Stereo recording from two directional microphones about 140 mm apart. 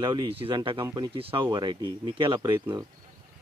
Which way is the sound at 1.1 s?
40° right (ahead or behind).